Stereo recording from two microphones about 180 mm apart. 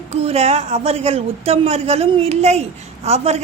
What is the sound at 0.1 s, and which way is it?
A woman's voice, 35° right (ahead or behind).